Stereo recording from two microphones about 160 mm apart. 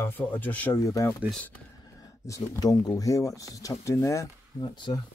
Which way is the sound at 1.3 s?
10° left (ahead or behind).